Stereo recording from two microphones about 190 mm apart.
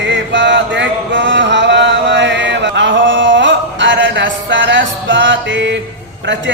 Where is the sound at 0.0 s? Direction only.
70° right (ahead or behind).